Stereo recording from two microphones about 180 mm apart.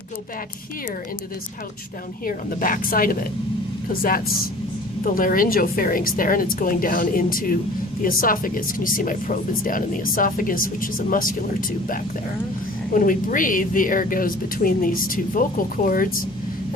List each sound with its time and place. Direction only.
2.2 s speech: 50° left (ahead or behind)
12.9 s speech: 50° left (ahead or behind)